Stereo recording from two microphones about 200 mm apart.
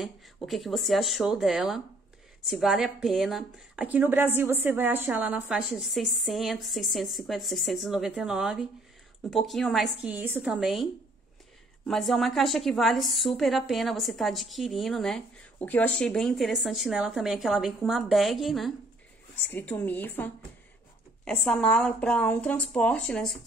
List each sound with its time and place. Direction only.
0.0 s a woman's voice: centre (ahead or behind)